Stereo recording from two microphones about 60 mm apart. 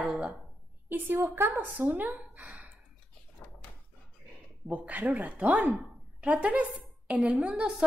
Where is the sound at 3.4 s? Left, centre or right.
Left.